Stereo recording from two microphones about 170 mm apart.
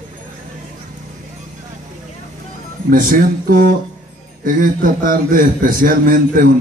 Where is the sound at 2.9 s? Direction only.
55° right (ahead or behind).